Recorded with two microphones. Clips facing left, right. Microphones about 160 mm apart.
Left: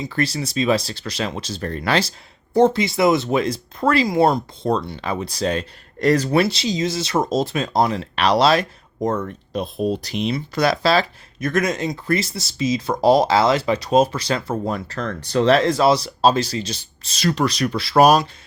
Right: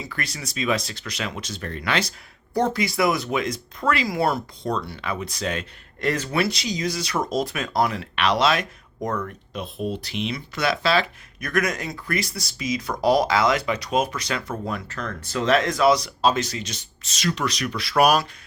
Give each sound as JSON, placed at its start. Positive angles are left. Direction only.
{"t": 0.1, "sound": "speech", "side_deg": 30}
{"t": 9.0, "sound": "speech", "side_deg": 25}
{"t": 9.5, "sound": "speech", "side_deg": 40}
{"t": 11.3, "sound": "speech", "side_deg": 25}